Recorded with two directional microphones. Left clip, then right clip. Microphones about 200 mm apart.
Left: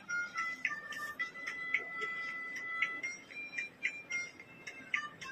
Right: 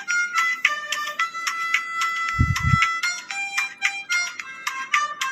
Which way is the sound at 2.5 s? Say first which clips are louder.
Right 15 dB; 45° right (ahead or behind).